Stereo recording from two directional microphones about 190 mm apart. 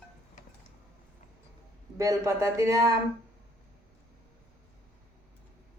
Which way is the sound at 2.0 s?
15° right (ahead or behind).